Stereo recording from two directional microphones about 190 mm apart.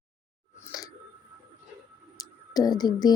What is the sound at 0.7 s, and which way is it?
Speech, 20° left (ahead or behind).